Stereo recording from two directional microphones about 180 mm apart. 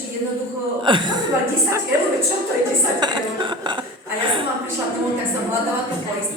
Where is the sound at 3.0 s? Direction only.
25° right (ahead or behind).